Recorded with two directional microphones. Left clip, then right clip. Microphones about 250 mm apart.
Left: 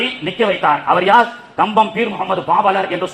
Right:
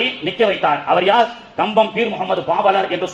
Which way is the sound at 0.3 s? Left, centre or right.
Left.